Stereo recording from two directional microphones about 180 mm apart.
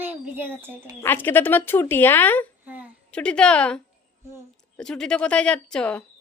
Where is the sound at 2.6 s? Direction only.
10° right (ahead or behind).